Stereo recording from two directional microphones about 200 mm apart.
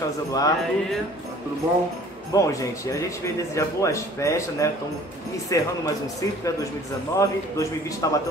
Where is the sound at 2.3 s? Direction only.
15° left (ahead or behind).